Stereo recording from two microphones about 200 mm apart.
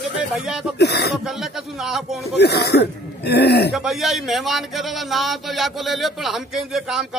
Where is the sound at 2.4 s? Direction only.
55° left (ahead or behind).